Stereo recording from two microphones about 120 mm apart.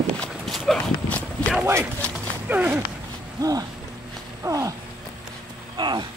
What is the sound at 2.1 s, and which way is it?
Horse, 10° right (ahead or behind).